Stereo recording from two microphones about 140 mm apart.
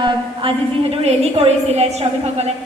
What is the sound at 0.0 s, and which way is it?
A woman's voice, 40° right (ahead or behind).